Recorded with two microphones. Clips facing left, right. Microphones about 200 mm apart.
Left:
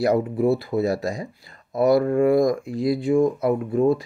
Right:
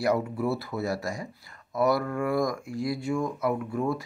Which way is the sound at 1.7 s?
30° left (ahead or behind).